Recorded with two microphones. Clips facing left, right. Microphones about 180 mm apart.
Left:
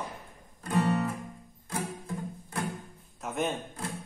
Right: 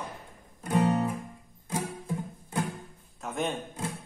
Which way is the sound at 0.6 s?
20° right (ahead or behind).